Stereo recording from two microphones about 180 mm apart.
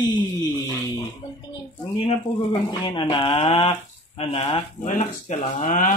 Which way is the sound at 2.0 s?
25° left (ahead or behind).